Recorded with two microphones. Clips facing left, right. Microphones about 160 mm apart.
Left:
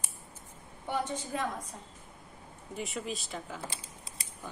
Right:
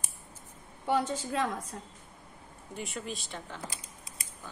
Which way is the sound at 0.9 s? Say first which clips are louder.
Right 4 dB; 90° right.